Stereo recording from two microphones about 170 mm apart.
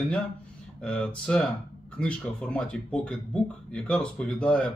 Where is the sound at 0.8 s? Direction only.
5° left (ahead or behind).